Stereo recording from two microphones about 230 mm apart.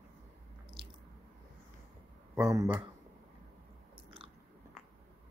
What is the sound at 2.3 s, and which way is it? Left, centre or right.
Speech, centre.